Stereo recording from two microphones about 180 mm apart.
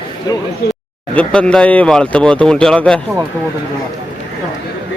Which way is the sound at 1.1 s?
5° left (ahead or behind).